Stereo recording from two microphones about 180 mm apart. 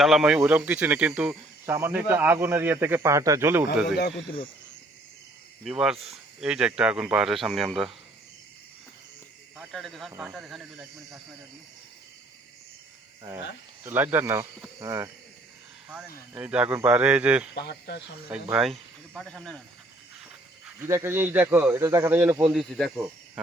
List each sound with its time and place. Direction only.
0.0 s speech: centre (ahead or behind)
5.6 s speech: 5° right (ahead or behind)
9.6 s speech: centre (ahead or behind)
13.8 s speech: 10° right (ahead or behind)
16.3 s speech: 5° right (ahead or behind)
17.5 s speech: 70° left (ahead or behind)
18.3 s speech: 5° right (ahead or behind)
20.8 s speech: 15° right (ahead or behind)
23.0 s speech: centre (ahead or behind)